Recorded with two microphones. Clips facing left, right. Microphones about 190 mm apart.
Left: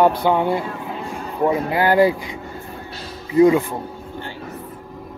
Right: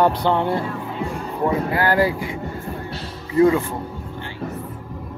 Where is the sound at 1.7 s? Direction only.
20° left (ahead or behind).